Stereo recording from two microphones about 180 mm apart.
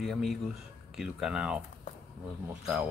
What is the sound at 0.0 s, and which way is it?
Speech, centre (ahead or behind).